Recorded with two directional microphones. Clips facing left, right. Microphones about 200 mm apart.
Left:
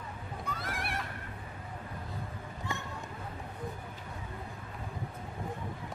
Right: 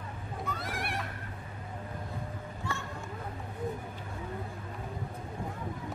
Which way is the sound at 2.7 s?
15° left (ahead or behind).